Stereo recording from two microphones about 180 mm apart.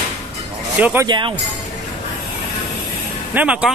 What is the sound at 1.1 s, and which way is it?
Speech, 25° right (ahead or behind).